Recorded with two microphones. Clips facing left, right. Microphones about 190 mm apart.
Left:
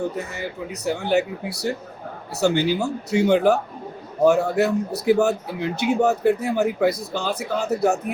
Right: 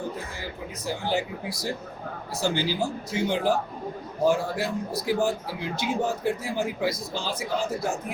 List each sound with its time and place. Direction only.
0.3 s speech: 65° left (ahead or behind)